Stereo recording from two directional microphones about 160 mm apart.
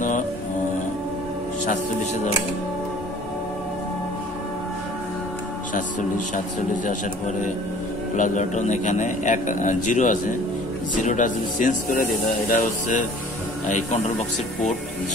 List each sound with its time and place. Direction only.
5.8 s a man's voice: 55° left (ahead or behind)